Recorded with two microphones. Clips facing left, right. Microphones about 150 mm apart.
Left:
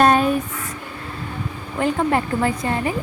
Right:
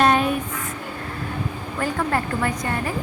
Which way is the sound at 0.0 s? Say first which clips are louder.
Left 3 dB; 40° left (ahead or behind).